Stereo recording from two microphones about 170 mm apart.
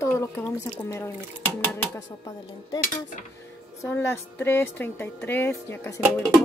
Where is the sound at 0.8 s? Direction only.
15° left (ahead or behind).